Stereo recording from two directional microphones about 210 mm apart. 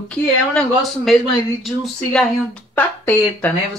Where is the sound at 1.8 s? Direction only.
5° left (ahead or behind).